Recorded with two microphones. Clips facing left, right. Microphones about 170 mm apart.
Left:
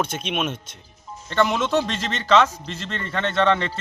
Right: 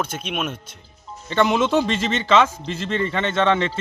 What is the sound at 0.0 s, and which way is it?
A man's voice, 5° right (ahead or behind).